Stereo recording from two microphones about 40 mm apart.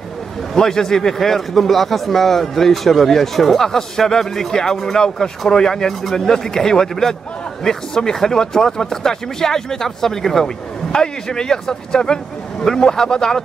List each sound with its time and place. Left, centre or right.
0.6 s speech: centre